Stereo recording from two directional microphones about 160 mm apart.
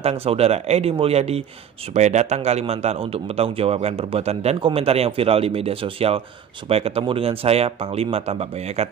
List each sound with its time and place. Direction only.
0.0 s a man's voice: 40° right (ahead or behind)